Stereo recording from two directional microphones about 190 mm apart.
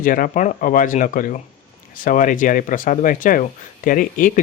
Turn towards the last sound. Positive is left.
turn(degrees=45)  # may be behind; listen again after turning